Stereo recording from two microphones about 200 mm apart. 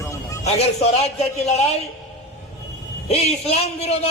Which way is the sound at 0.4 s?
35° left (ahead or behind).